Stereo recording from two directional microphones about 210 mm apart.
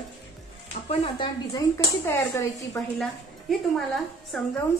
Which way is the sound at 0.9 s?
25° left (ahead or behind).